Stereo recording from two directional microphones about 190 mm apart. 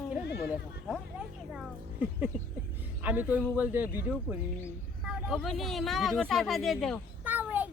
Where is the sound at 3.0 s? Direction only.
10° right (ahead or behind).